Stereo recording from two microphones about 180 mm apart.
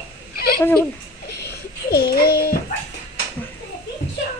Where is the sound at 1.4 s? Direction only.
60° left (ahead or behind).